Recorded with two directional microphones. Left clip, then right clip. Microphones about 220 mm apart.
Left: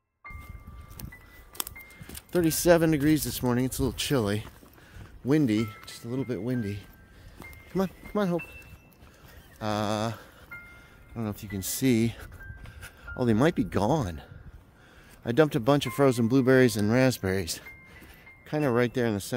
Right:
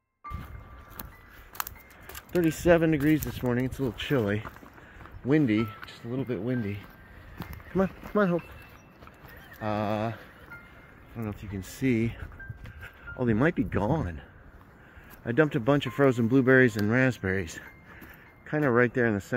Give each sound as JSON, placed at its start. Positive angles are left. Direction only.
{"t": 2.4, "sound": "speech", "side_deg": 40}
{"t": 7.7, "sound": "speech", "side_deg": 25}
{"t": 9.6, "sound": "speech", "side_deg": 45}
{"t": 11.1, "sound": "speech", "side_deg": 45}
{"t": 13.2, "sound": "speech", "side_deg": 35}
{"t": 15.2, "sound": "speech", "side_deg": 35}